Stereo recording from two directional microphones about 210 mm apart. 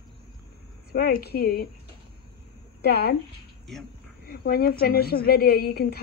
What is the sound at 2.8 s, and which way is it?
Speech, 50° left (ahead or behind).